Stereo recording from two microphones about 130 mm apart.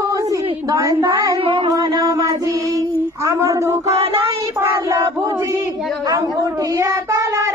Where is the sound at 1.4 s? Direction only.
40° right (ahead or behind).